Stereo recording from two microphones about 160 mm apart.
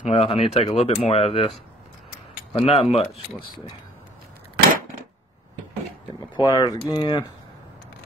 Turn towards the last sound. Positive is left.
turn(degrees=30)  # may be behind; listen again after turning